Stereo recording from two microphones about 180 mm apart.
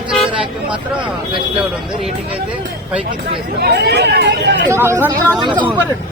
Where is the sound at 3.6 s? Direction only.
65° right (ahead or behind).